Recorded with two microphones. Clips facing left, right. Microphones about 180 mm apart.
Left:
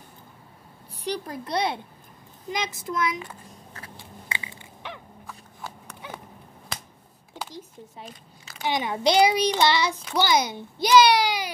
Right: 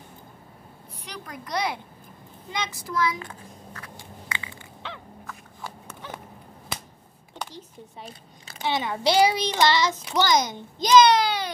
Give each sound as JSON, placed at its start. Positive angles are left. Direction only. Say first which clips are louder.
{"t": 1.0, "sound": "speech", "louder": "left 9 dB", "side_deg": 30}
{"t": 4.4, "sound": "crushing", "louder": "right 1 dB", "side_deg": 20}
{"t": 7.3, "sound": "a sound", "louder": "even", "side_deg": 10}
{"t": 8.0, "sound": "a sound", "louder": "right 1 dB", "side_deg": -35}
{"t": 8.6, "sound": "a child's voice", "louder": "left 1 dB", "side_deg": 15}
{"t": 11.0, "sound": "baby cry", "louder": "right 1 dB", "side_deg": 10}